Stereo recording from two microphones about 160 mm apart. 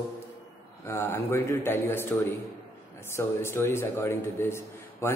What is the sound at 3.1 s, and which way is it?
A man's voice, 15° left (ahead or behind).